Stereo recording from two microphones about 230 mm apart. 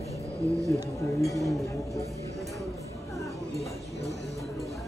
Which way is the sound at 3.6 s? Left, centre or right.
Left.